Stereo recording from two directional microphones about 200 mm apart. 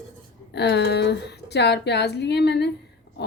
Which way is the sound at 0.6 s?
55° left (ahead or behind).